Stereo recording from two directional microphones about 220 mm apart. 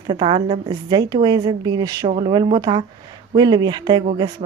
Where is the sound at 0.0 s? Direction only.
20° right (ahead or behind).